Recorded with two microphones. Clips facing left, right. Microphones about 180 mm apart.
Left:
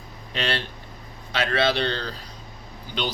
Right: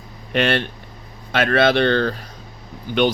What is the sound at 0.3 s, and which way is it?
Speech, 55° right (ahead or behind).